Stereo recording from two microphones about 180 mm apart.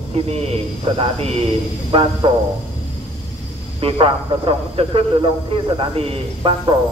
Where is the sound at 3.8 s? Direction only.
30° right (ahead or behind).